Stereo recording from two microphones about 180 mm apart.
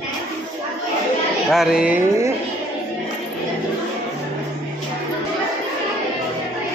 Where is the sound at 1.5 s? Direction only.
Centre (ahead or behind).